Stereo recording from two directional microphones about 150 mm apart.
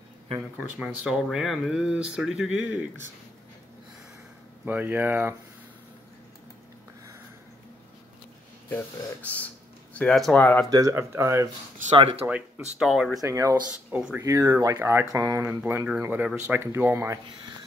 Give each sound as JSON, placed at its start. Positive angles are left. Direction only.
{"t": 0.6, "sound": "speech", "side_deg": -10}
{"t": 4.6, "sound": "speech", "side_deg": -15}
{"t": 8.6, "sound": "speech", "side_deg": 10}
{"t": 10.7, "sound": "speech", "side_deg": -20}
{"t": 12.0, "sound": "speech", "side_deg": -40}
{"t": 12.3, "sound": "speech", "side_deg": -5}
{"t": 13.2, "sound": "speech", "side_deg": -20}
{"t": 13.9, "sound": "speech", "side_deg": -10}
{"t": 14.2, "sound": "speech", "side_deg": -20}